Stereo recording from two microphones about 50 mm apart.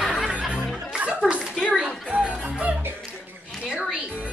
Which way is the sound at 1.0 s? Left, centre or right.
Right.